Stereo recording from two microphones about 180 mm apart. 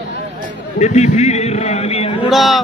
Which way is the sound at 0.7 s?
40° left (ahead or behind).